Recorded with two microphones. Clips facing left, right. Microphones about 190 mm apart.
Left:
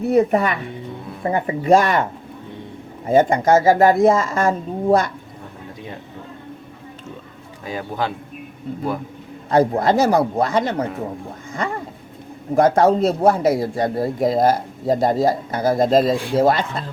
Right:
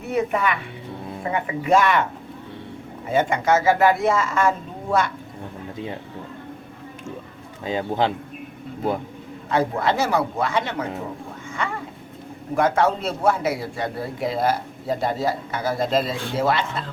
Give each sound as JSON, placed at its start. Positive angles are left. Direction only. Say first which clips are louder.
{"t": 0.1, "sound": "a man's voice", "louder": "left 5 dB", "side_deg": 35}
{"t": 3.1, "sound": "a man's voice", "louder": "left 5 dB", "side_deg": 40}
{"t": 7.6, "sound": "a man's voice", "louder": "right 3 dB", "side_deg": -25}
{"t": 9.5, "sound": "a man's voice", "louder": "left 5 dB", "side_deg": 40}
{"t": 11.6, "sound": "a sound", "louder": "left 3 dB", "side_deg": 40}
{"t": 12.5, "sound": "a man's voice", "louder": "left 6 dB", "side_deg": 40}